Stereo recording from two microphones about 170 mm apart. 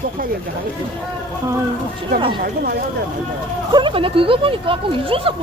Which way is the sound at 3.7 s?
25° right (ahead or behind).